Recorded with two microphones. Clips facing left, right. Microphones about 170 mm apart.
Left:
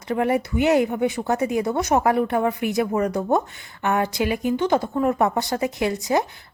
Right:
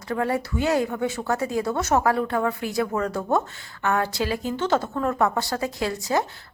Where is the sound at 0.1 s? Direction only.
20° left (ahead or behind).